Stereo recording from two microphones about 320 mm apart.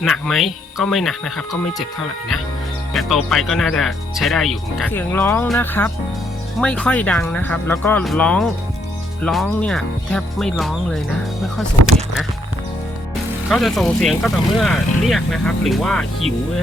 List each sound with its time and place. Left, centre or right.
0.0 s speech: centre
2.9 s speech: centre
11.9 s speech: right
13.5 s speech: centre